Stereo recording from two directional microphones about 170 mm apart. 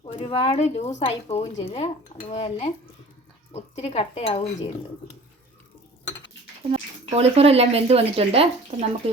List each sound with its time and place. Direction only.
0.0 s speech: 35° left (ahead or behind)
6.7 s speech: 35° right (ahead or behind)